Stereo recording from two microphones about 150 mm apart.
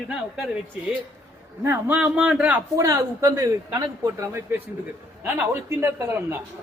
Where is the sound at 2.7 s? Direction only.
20° right (ahead or behind).